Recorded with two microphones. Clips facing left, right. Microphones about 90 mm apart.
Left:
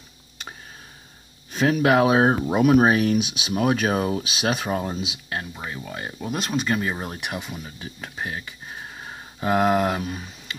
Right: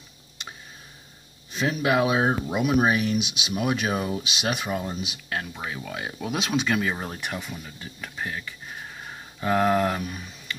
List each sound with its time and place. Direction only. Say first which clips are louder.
1.5 s speech: left 5 dB; 50° left (ahead or behind)
5.3 s speech: right 2 dB; 5° left (ahead or behind)
9.4 s speech: left 2 dB; 20° left (ahead or behind)
9.9 s speech: left 3 dB; 35° left (ahead or behind)